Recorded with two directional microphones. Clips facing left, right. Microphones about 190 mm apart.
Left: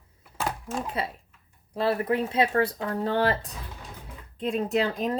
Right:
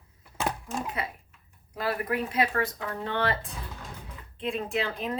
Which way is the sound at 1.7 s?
30° left (ahead or behind).